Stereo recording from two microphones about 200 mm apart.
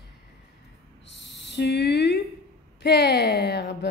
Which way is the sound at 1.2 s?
60° left (ahead or behind).